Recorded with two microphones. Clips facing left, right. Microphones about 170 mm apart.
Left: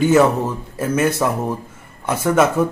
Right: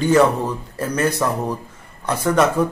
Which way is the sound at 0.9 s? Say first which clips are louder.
Left 3 dB; 25° left (ahead or behind).